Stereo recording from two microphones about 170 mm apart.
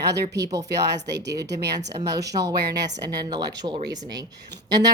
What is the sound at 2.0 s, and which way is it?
Speech, 20° right (ahead or behind).